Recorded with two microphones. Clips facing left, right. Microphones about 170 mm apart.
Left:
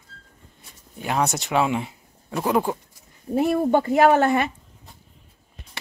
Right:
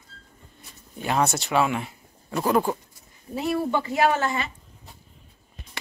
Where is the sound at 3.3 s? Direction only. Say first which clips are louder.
Left 6 dB; 50° left (ahead or behind).